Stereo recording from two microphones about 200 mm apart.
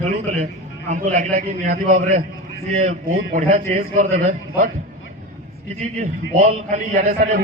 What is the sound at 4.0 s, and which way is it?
Speech, 40° right (ahead or behind).